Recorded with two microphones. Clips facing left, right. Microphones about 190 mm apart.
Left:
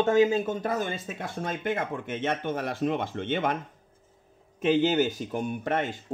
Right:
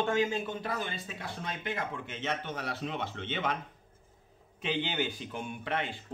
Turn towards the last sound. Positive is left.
turn(degrees=45)  # may be behind; listen again after turning